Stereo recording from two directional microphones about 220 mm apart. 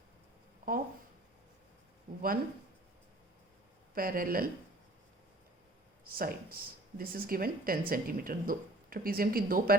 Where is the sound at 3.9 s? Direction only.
40° right (ahead or behind).